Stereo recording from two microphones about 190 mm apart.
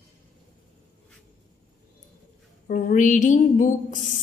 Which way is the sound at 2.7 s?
40° left (ahead or behind).